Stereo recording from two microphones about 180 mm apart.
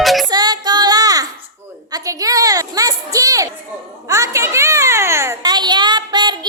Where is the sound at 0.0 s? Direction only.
Centre (ahead or behind).